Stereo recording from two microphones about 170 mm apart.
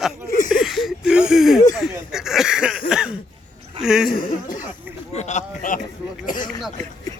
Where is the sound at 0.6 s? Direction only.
Centre (ahead or behind).